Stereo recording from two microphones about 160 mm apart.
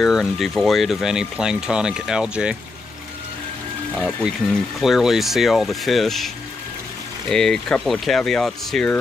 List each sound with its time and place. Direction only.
0.0 s speech: centre (ahead or behind)
4.2 s speech: centre (ahead or behind)